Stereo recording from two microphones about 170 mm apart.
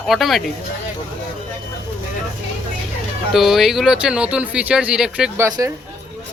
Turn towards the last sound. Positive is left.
turn(degrees=-15)  # may be behind; listen again after turning